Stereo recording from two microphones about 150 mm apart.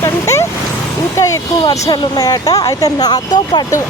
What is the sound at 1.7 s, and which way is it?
Speech, 25° left (ahead or behind).